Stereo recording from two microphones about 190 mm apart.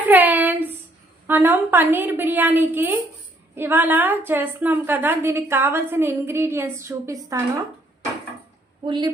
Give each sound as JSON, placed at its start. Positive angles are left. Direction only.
{"t": 0.1, "sound": "a sound", "side_deg": -10}
{"t": 1.3, "sound": "a woman's voice", "side_deg": -10}
{"t": 8.8, "sound": "a woman's voice", "side_deg": -30}